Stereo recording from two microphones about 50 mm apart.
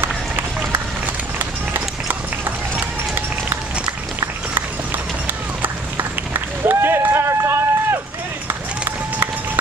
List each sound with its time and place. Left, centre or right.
1.0 s run: right
4.2 s run: right
8.5 s run: right